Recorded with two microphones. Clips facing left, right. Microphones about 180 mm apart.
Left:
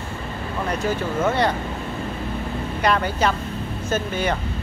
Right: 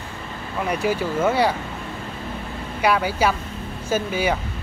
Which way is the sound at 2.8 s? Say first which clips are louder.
Right 1 dB; 10° right (ahead or behind).